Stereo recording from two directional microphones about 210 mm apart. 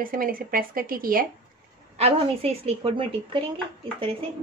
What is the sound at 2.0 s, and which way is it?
A woman's voice, 30° right (ahead or behind).